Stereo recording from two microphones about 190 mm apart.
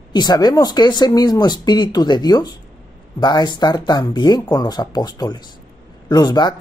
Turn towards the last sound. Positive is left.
turn(degrees=20)  # may be behind; listen again after turning